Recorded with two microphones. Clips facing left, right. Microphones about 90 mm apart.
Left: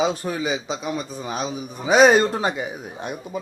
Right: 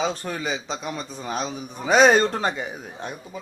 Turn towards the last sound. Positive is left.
turn(degrees=15)  # may be behind; listen again after turning